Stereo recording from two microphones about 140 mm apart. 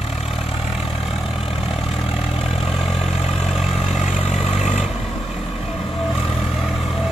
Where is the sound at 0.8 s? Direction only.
Centre (ahead or behind).